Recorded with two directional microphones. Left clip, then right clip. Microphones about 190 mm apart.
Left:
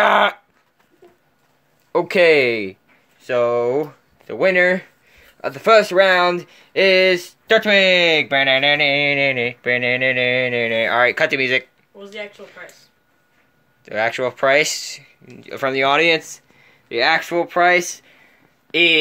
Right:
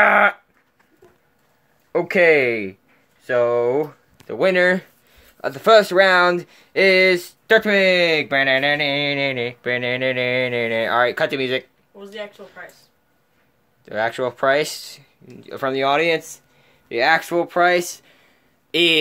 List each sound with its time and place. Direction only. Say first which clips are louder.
0.0 s dog: even; 10° left (ahead or behind)
1.9 s speech: left 1 dB; 10° left (ahead or behind)
12.0 s speech: left 1 dB; 20° right (ahead or behind)
13.8 s speech: left 2 dB; centre (ahead or behind)
16.9 s speech: even; 5° right (ahead or behind)